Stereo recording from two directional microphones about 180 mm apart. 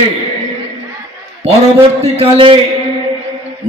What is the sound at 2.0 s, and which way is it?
Speech, 35° right (ahead or behind).